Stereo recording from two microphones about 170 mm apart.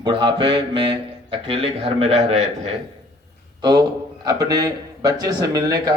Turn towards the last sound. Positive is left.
turn(degrees=-20)  # may be behind; listen again after turning